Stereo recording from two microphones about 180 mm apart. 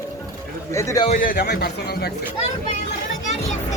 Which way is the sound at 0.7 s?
15° left (ahead or behind).